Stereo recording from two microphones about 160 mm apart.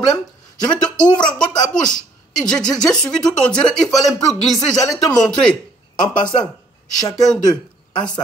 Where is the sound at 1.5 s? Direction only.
25° left (ahead or behind).